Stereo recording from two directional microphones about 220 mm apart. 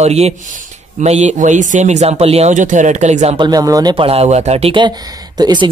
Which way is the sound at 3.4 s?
15° right (ahead or behind).